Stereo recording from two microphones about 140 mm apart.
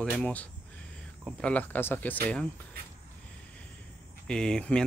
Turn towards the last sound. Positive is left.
turn(degrees=5)  # may be behind; listen again after turning